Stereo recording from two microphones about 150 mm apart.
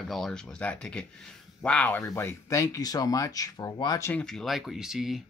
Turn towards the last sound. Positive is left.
turn(degrees=0)  # may be behind; listen again after turning